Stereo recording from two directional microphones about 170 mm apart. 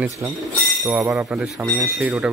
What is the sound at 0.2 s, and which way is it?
Speech, 15° right (ahead or behind).